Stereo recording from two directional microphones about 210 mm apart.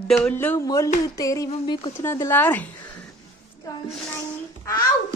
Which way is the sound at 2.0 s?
10° left (ahead or behind).